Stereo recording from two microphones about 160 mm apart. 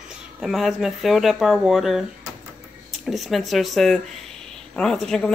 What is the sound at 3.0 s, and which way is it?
Speech, centre (ahead or behind).